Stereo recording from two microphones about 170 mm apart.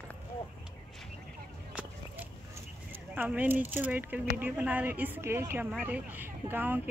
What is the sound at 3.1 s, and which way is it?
Speech, 10° right (ahead or behind).